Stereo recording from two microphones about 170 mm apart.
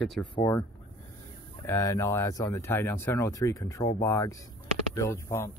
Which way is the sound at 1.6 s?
15° left (ahead or behind).